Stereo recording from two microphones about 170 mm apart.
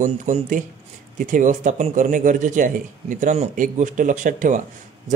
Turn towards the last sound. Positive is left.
turn(degrees=-45)  # may be behind; listen again after turning